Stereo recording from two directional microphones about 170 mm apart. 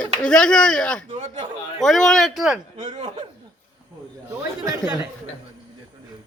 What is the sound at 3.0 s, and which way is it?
Speech, 30° right (ahead or behind).